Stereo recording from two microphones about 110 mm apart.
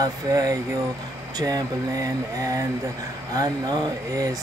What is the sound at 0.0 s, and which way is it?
Speech, 35° right (ahead or behind).